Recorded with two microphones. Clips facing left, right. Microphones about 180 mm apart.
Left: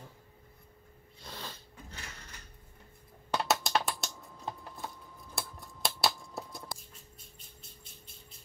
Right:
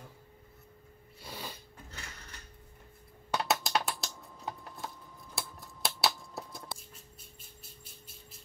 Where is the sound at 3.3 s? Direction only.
Centre (ahead or behind).